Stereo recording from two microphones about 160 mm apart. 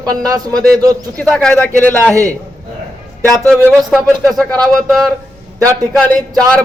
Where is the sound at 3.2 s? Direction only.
Centre (ahead or behind).